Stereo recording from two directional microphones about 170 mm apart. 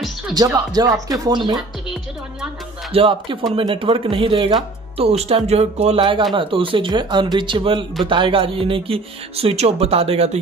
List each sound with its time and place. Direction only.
0.4 s speech: 20° right (ahead or behind)
2.9 s speech: 30° right (ahead or behind)